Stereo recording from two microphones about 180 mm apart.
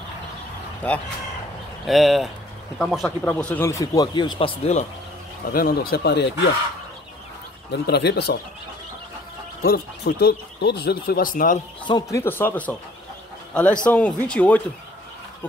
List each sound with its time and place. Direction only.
0.8 s speech: 10° left (ahead or behind); by 4.8 s 35° left (ahead or behind)
5.5 s speech: 55° left (ahead or behind)
7.7 s speech: 70° left (ahead or behind)
9.6 s speech: 65° left (ahead or behind); by 11.6 s 50° left (ahead or behind)
11.9 s speech: 15° left (ahead or behind)
13.8 s speech: 5° left (ahead or behind)